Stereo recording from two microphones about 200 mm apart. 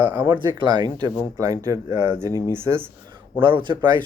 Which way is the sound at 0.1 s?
20° right (ahead or behind).